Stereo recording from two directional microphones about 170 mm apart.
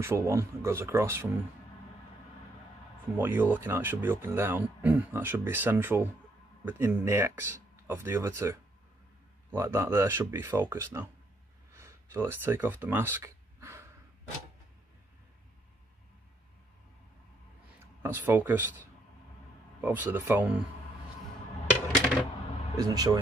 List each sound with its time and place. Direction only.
0.0 s speech: 15° right (ahead or behind)
3.2 s speech: 10° right (ahead or behind)
11.7 s a sound: 15° right (ahead or behind)
18.0 s speech: 15° right (ahead or behind)
19.8 s speech: 10° right (ahead or behind)
22.8 s speech: 20° right (ahead or behind)